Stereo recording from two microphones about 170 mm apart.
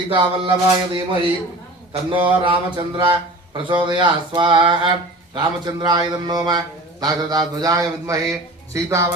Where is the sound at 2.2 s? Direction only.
30° right (ahead or behind).